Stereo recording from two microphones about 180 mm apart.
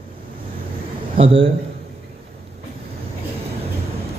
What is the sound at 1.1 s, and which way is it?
Speech, 30° right (ahead or behind).